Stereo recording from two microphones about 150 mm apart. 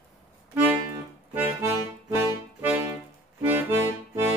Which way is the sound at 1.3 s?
15° right (ahead or behind).